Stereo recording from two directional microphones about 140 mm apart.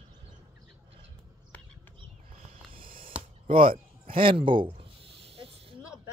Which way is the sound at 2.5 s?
40° right (ahead or behind).